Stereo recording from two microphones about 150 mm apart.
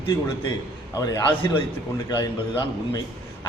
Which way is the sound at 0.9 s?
25° left (ahead or behind).